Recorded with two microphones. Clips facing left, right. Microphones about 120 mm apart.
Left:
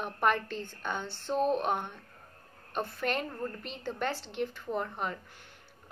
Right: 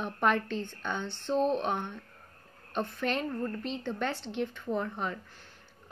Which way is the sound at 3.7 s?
10° left (ahead or behind).